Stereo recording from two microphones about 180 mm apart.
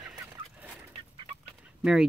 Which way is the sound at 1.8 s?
5° right (ahead or behind).